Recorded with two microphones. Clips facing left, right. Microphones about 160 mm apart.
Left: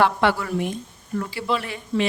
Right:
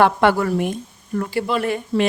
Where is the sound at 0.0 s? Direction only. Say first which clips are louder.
Right 4 dB; 50° right (ahead or behind).